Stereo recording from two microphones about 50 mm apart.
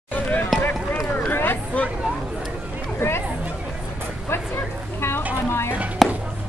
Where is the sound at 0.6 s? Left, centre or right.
Left.